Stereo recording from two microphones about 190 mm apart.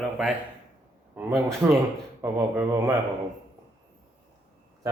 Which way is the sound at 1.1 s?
10° right (ahead or behind).